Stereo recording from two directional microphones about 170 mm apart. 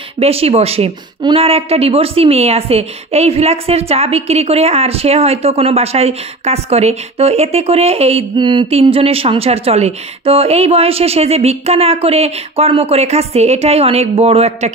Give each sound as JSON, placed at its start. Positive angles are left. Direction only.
{"t": 0.2, "sound": "a woman's voice", "side_deg": -35}